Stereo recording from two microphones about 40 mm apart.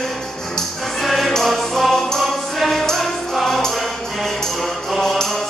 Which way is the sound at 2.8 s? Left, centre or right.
Centre.